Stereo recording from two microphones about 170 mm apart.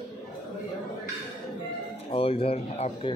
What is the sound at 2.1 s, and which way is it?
Speech, 35° left (ahead or behind).